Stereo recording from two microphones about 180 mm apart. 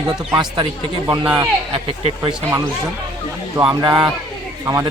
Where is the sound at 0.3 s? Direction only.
25° right (ahead or behind).